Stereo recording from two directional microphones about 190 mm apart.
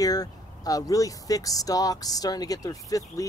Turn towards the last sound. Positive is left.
turn(degrees=15)  # may be behind; listen again after turning